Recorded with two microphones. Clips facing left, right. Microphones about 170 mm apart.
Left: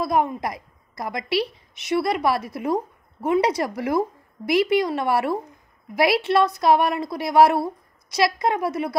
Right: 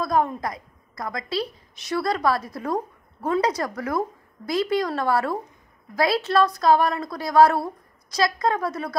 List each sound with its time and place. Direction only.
0.0 s a woman's voice: 25° left (ahead or behind)